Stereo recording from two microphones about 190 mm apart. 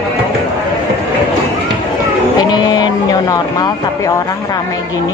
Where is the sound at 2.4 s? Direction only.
20° left (ahead or behind).